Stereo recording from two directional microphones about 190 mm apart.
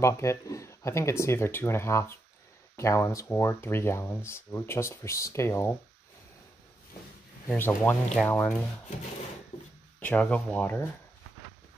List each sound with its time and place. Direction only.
0.0 s speech: 15° left (ahead or behind)
7.4 s speech: 10° left (ahead or behind)
9.9 s speech: 10° left (ahead or behind)